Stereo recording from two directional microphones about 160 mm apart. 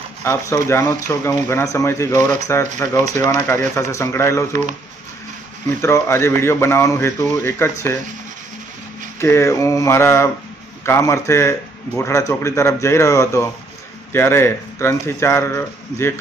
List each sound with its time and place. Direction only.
0.2 s speech: 15° left (ahead or behind)
5.8 s speech: 15° left (ahead or behind)
9.2 s speech: 15° left (ahead or behind)